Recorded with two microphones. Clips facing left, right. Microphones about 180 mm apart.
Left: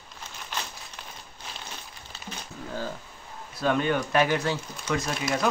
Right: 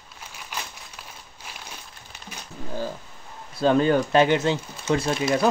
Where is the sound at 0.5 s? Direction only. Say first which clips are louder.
Even; 10° right (ahead or behind).